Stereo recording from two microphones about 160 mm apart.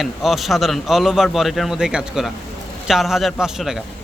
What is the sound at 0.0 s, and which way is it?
A man's voice, centre (ahead or behind).